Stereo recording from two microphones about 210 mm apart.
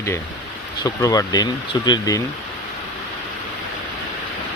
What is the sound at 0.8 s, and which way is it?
Speech, 20° left (ahead or behind).